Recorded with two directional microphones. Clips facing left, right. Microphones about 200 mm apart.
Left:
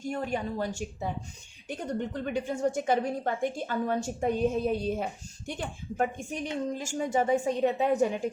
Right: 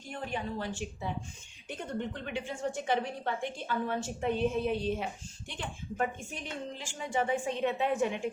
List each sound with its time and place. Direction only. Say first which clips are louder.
0.1 s a woman's voice: left 4 dB; 45° left (ahead or behind)